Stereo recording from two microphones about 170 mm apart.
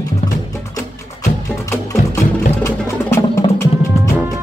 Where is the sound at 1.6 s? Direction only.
20° left (ahead or behind).